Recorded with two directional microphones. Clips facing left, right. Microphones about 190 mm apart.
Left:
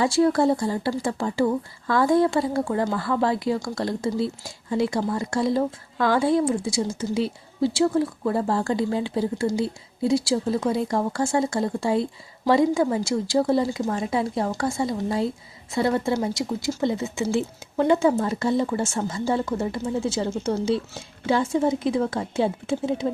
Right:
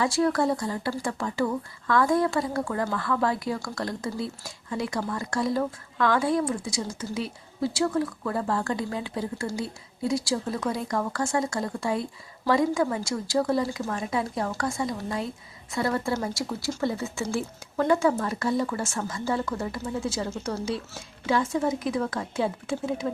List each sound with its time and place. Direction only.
0.0 s speech: 25° left (ahead or behind)